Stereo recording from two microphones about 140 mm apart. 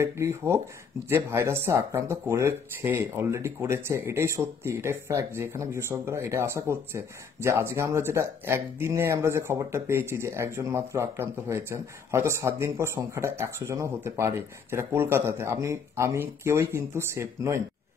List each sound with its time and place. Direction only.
0.0 s speech: 20° right (ahead or behind)